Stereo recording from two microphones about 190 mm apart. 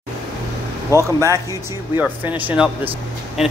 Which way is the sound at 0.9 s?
15° right (ahead or behind).